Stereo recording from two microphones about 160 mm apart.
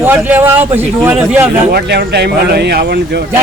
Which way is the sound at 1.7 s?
90° right.